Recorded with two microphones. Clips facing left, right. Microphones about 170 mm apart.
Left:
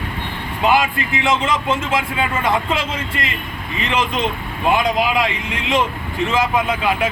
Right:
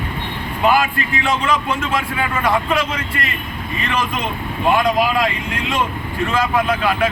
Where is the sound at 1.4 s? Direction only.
20° left (ahead or behind).